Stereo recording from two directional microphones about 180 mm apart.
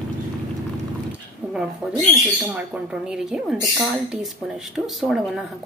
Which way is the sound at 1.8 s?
Centre (ahead or behind).